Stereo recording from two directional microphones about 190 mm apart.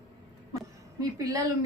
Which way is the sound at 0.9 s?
20° right (ahead or behind).